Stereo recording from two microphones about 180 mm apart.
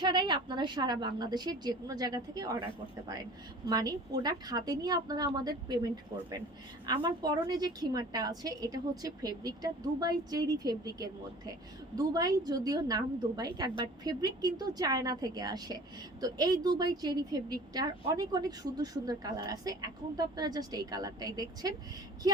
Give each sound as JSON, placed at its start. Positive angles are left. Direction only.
{"t": 0.0, "sound": "a woman's voice", "side_deg": -25}
{"t": 3.7, "sound": "a woman's voice", "side_deg": -20}